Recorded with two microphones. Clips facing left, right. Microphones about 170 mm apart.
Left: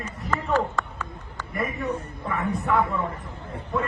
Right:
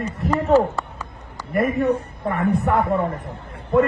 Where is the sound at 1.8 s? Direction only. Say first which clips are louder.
Right 8 dB; 65° right (ahead or behind).